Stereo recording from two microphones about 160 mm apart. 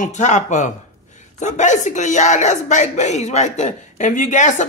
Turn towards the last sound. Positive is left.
turn(degrees=50)  # may be behind; listen again after turning